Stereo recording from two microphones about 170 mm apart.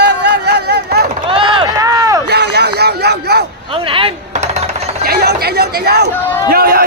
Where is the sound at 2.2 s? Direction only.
75° right (ahead or behind).